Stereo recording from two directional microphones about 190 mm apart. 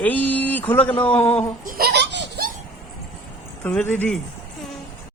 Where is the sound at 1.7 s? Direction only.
60° right (ahead or behind).